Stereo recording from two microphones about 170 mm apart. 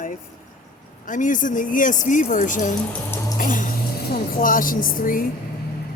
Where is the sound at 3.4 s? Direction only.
50° left (ahead or behind).